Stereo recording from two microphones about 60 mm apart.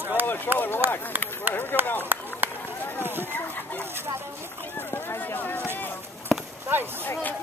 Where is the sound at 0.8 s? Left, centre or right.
Right.